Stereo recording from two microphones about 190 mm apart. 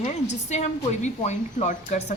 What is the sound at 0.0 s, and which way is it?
A woman's voice, 35° left (ahead or behind).